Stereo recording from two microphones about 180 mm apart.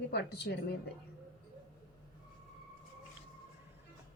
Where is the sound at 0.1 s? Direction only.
65° left (ahead or behind).